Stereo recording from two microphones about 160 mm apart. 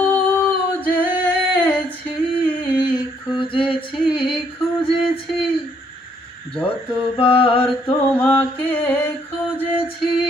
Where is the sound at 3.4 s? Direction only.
30° left (ahead or behind).